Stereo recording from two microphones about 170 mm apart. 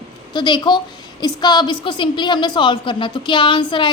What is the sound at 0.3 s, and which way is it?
A woman's voice, 25° left (ahead or behind).